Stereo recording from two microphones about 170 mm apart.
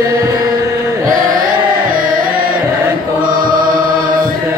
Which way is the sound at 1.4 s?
55° right (ahead or behind).